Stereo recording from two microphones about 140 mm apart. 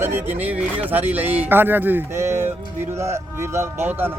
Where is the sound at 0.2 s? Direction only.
10° right (ahead or behind).